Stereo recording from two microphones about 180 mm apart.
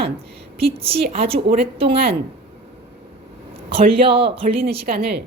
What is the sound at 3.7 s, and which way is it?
Speech, 30° right (ahead or behind).